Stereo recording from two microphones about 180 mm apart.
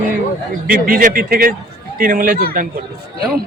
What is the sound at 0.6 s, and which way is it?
Speech, 50° right (ahead or behind).